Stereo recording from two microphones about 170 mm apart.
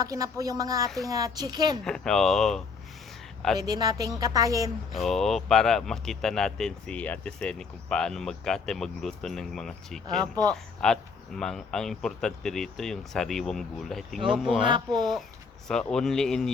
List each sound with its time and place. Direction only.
0.0 s speech: 20° right (ahead or behind)
1.8 s speech: 5° left (ahead or behind)
3.6 s speech: 25° right (ahead or behind)
4.9 s speech: centre (ahead or behind)